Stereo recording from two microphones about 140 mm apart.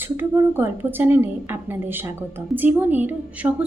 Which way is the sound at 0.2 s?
15° right (ahead or behind).